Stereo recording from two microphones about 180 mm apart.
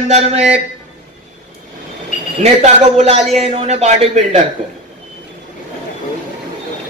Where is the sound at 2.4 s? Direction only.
35° right (ahead or behind).